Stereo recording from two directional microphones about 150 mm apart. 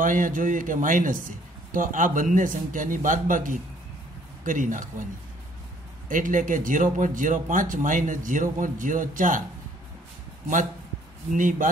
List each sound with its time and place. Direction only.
0.0 s a man's voice: 60° right (ahead or behind)
6.0 s a man's voice: 60° right (ahead or behind)
11.3 s a man's voice: 60° right (ahead or behind)